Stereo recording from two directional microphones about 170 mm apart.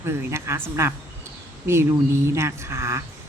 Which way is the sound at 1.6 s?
15° right (ahead or behind).